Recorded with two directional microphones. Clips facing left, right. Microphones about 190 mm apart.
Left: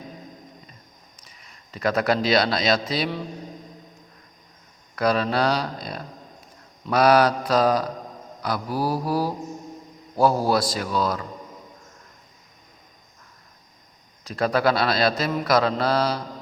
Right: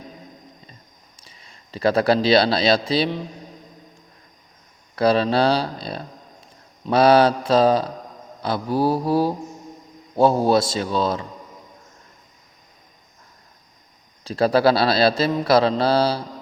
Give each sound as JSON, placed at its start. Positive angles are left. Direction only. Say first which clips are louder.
{"t": 1.2, "sound": "speech", "louder": "right 1 dB", "side_deg": -30}
{"t": 4.9, "sound": "mantra", "louder": "right 4 dB", "side_deg": -30}
{"t": 14.3, "sound": "a man's voice", "louder": "right 4 dB", "side_deg": -30}
{"t": 15.4, "sound": "mantra", "louder": "right 3 dB", "side_deg": -30}